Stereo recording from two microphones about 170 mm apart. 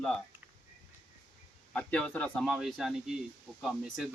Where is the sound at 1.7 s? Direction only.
10° left (ahead or behind).